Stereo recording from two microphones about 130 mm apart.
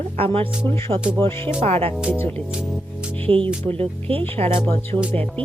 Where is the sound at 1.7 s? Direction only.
50° right (ahead or behind).